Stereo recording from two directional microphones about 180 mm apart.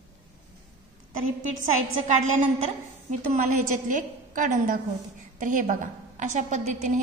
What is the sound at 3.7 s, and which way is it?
A woman's voice, 45° right (ahead or behind).